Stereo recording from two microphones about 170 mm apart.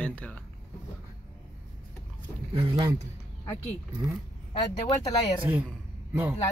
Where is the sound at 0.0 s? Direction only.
10° left (ahead or behind).